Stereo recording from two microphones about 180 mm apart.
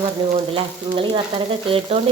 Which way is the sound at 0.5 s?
30° right (ahead or behind).